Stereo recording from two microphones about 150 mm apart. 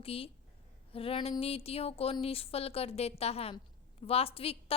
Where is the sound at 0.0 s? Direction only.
40° left (ahead or behind).